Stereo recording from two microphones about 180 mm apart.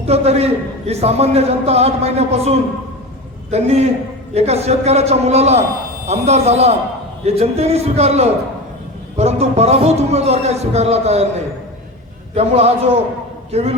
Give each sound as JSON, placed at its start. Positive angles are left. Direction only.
{"t": 0.0, "sound": "a man's voice", "side_deg": -35}
{"t": 12.3, "sound": "a man's voice", "side_deg": -35}